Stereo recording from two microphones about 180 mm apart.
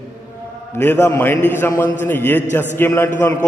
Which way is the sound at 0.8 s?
15° left (ahead or behind).